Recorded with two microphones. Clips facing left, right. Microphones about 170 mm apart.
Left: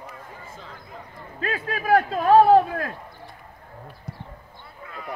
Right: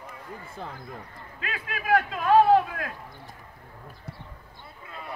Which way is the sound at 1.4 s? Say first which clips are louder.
Left 6 dB; 40° left (ahead or behind).